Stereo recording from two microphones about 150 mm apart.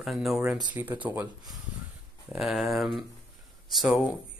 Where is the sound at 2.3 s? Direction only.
Centre (ahead or behind).